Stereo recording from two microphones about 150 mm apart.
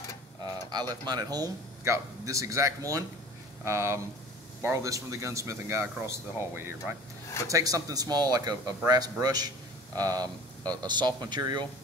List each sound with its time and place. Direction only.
0.7 s a man's voice: 25° right (ahead or behind)